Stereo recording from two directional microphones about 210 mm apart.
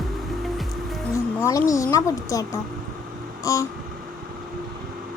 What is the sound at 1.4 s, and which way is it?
Speech, 15° left (ahead or behind).